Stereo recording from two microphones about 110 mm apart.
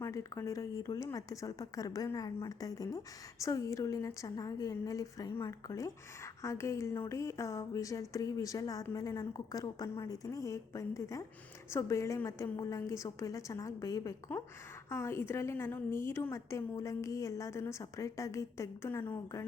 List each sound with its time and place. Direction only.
0.0 s a woman's voice: 30° left (ahead or behind)
19.1 s speech: 30° left (ahead or behind)